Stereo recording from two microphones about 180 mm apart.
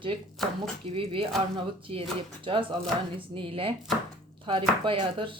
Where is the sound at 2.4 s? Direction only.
30° right (ahead or behind).